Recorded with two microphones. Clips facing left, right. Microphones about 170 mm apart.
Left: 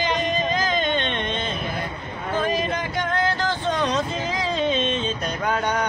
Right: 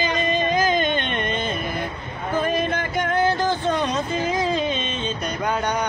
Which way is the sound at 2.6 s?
5° right (ahead or behind).